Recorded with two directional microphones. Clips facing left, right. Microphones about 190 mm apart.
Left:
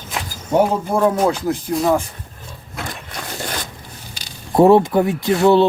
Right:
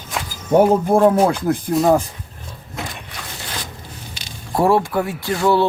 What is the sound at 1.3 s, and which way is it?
Speech, 55° right (ahead or behind).